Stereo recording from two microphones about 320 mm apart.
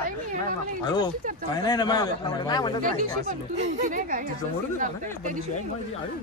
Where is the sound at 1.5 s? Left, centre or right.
Centre.